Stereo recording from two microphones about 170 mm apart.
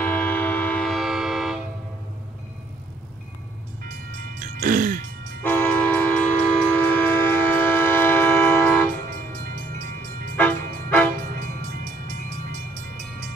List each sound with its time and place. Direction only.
0.0 s train: 10° left (ahead or behind)
4.4 s throat clearing: 50° right (ahead or behind)
5.4 s train: 10° left (ahead or behind)
10.3 s music: 10° left (ahead or behind)